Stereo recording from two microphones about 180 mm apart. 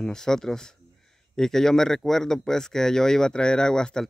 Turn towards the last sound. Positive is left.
turn(degrees=5)  # may be behind; listen again after turning